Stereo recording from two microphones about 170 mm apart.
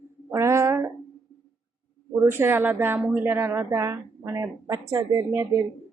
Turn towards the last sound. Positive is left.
turn(degrees=-15)  # may be behind; listen again after turning